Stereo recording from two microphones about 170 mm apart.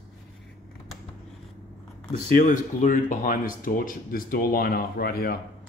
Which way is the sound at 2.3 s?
50° left (ahead or behind).